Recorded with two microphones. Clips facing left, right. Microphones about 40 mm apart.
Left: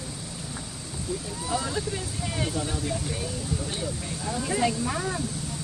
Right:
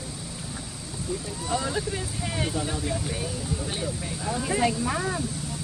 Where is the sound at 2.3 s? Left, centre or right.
Centre.